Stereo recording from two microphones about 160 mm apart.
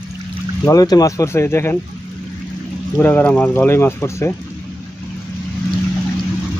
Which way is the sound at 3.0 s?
10° left (ahead or behind).